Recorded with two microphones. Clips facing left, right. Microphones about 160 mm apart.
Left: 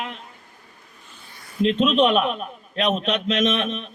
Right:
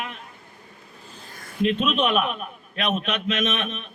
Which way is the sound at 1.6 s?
35° left (ahead or behind).